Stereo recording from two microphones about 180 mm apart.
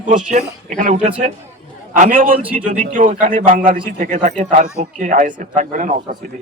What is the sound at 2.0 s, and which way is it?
Speech, 50° right (ahead or behind).